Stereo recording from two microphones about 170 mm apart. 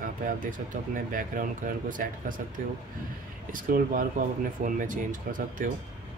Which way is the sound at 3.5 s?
55° right (ahead or behind).